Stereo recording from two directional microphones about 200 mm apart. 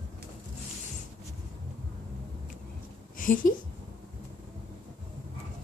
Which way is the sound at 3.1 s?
45° left (ahead or behind).